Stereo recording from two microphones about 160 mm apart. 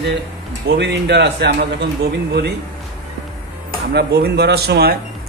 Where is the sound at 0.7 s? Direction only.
90° right.